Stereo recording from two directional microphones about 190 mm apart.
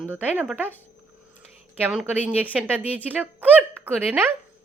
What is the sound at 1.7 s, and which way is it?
A woman's voice, 5° right (ahead or behind).